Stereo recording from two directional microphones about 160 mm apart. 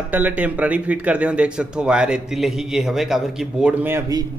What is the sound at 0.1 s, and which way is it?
A man's voice, 10° right (ahead or behind).